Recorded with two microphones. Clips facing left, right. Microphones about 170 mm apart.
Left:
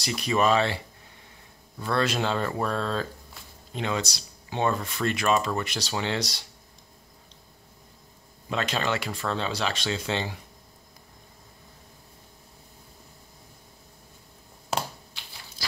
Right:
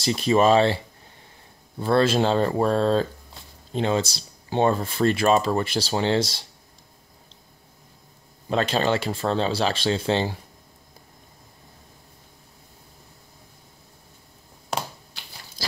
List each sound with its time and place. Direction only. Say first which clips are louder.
0.0 s speech: right 5 dB; 30° right (ahead or behind)
1.8 s speech: right 7 dB; 30° right (ahead or behind)
8.5 s speech: right 6 dB; 35° right (ahead or behind)
14.7 s a sound: even; 5° left (ahead or behind)